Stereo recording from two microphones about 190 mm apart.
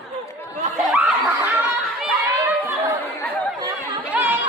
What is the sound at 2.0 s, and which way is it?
Chatter, 5° right (ahead or behind).